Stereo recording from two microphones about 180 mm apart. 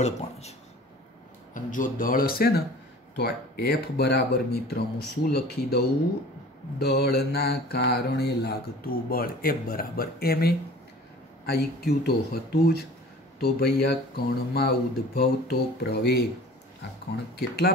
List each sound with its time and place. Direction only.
0.0 s speech: 35° left (ahead or behind)
1.5 s speech: 45° left (ahead or behind); by 16.3 s 65° left (ahead or behind)
17.4 s speech: 60° left (ahead or behind)